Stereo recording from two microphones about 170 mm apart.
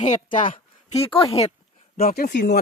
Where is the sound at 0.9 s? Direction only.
30° left (ahead or behind).